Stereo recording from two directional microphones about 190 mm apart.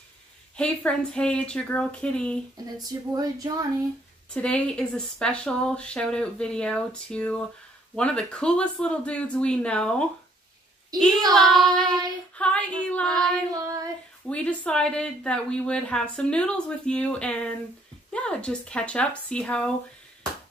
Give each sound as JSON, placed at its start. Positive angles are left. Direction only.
{"t": 0.6, "sound": "speech", "side_deg": 5}
{"t": 2.5, "sound": "speech", "side_deg": -20}
{"t": 4.3, "sound": "speech", "side_deg": 5}
{"t": 10.9, "sound": "speech", "side_deg": -20}
{"t": 11.3, "sound": "speech", "side_deg": 0}
{"t": 12.4, "sound": "female singing", "side_deg": 5}
{"t": 13.1, "sound": "female singing", "side_deg": -20}
{"t": 14.3, "sound": "speech", "side_deg": 5}